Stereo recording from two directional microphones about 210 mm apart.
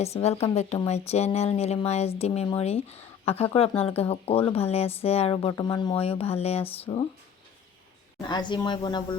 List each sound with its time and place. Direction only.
0.0 s speech: 30° left (ahead or behind)
8.3 s speech: 20° left (ahead or behind)